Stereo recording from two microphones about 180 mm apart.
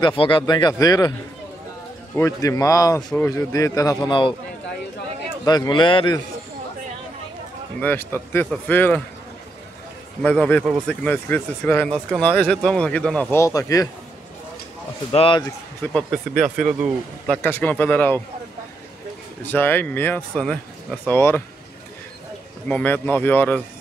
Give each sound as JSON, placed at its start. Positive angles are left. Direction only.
{"t": 0.0, "sound": "speech", "side_deg": 30}
{"t": 2.1, "sound": "speech", "side_deg": 15}
{"t": 5.4, "sound": "speech", "side_deg": 20}
{"t": 7.8, "sound": "speech", "side_deg": 10}
{"t": 10.2, "sound": "speech", "side_deg": 5}
{"t": 15.1, "sound": "speech", "side_deg": 30}
{"t": 15.8, "sound": "speech", "side_deg": 5}
{"t": 17.4, "sound": "speech", "side_deg": 10}
{"t": 19.4, "sound": "speech", "side_deg": 10}
{"t": 22.7, "sound": "speech", "side_deg": 10}